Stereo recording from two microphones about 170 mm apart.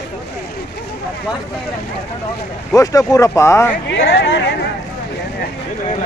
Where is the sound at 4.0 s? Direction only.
80° left.